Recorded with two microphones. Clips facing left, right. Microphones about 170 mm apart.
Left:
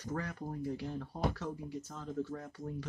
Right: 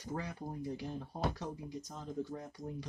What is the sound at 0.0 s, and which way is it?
Speech, 10° right (ahead or behind).